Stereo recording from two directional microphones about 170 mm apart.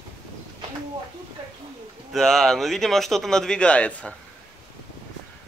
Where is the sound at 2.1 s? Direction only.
Centre (ahead or behind).